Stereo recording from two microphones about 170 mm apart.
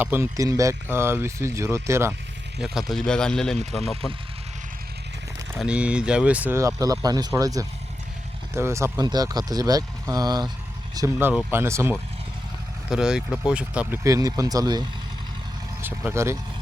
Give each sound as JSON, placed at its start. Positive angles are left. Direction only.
{"t": 0.0, "sound": "speech", "side_deg": -15}
{"t": 2.6, "sound": "speech", "side_deg": -5}
{"t": 5.5, "sound": "speech", "side_deg": -5}
{"t": 12.9, "sound": "speech", "side_deg": -5}
{"t": 14.0, "sound": "speech", "side_deg": -20}
{"t": 15.8, "sound": "speech", "side_deg": -10}